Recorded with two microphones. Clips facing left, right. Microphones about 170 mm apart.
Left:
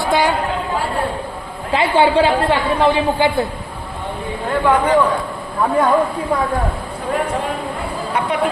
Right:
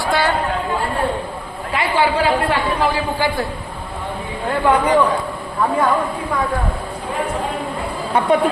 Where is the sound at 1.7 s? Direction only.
25° left (ahead or behind).